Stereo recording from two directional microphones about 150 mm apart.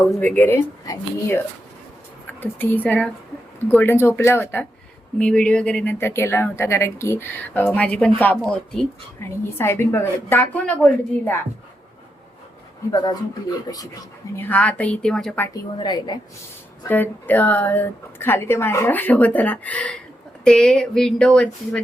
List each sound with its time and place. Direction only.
0.2 s a woman's voice: 10° left (ahead or behind)
5.2 s a woman's voice: 5° left (ahead or behind)
9.2 s a woman's voice: 15° left (ahead or behind)
13.7 s a woman's voice: 20° left (ahead or behind)
14.3 s a woman's voice: 10° left (ahead or behind)
15.8 s a woman's voice: 30° left (ahead or behind)
16.9 s a woman's voice: 10° left (ahead or behind)